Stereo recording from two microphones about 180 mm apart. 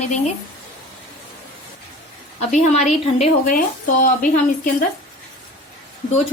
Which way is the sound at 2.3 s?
40° left (ahead or behind).